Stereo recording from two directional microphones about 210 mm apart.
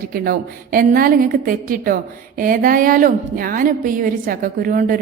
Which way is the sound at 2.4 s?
40° right (ahead or behind).